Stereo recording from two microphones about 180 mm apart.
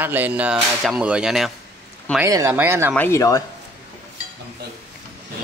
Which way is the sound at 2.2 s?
15° right (ahead or behind).